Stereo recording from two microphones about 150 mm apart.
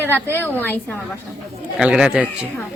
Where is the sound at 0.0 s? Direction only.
15° left (ahead or behind).